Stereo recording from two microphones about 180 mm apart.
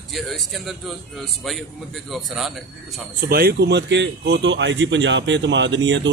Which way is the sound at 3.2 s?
60° right (ahead or behind).